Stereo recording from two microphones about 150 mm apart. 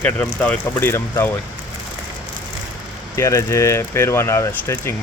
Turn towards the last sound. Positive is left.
turn(degrees=20)  # may be behind; listen again after turning